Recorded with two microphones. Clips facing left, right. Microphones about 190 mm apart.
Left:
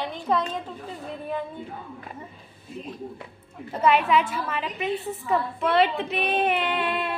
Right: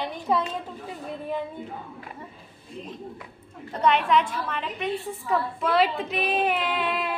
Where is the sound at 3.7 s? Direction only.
5° left (ahead or behind).